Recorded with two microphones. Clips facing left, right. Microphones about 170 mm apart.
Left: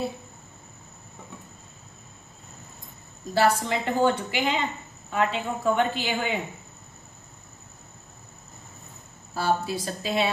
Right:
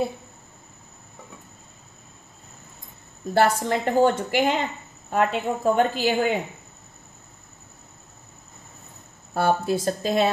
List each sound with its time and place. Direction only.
3.3 s a woman's voice: 50° right (ahead or behind)
9.3 s a woman's voice: 55° right (ahead or behind)